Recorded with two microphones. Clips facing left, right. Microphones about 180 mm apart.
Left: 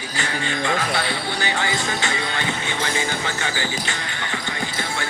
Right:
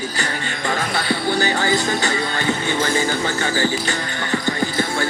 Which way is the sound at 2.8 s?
40° right (ahead or behind).